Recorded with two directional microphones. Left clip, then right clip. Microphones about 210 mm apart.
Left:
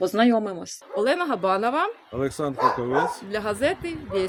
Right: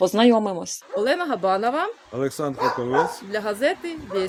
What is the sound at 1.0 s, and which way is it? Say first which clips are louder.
Speech: right 1 dB; 15° left (ahead or behind).